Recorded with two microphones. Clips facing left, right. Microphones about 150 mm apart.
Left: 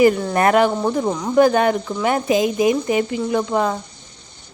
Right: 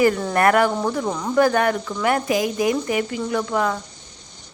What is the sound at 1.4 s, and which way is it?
Speech, 20° left (ahead or behind).